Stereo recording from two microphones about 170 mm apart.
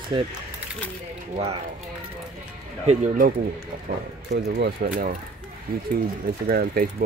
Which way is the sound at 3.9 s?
70° right (ahead or behind).